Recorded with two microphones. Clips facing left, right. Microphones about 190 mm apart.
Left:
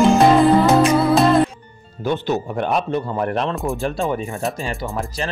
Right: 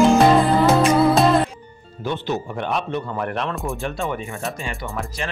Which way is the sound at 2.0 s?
45° left (ahead or behind).